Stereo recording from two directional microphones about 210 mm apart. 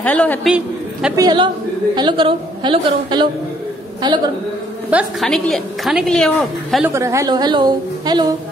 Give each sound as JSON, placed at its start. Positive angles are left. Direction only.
{"t": 0.0, "sound": "a woman's voice", "side_deg": 5}
{"t": 1.1, "sound": "a woman's voice", "side_deg": -20}
{"t": 4.9, "sound": "a woman's voice", "side_deg": 0}
{"t": 6.8, "sound": "a woman's voice", "side_deg": -15}